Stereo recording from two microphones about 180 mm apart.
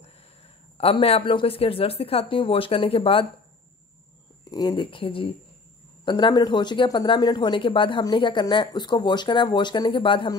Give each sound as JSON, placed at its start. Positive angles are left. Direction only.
{"t": 0.0, "sound": "a man's voice", "side_deg": 35}
{"t": 4.5, "sound": "speech", "side_deg": 25}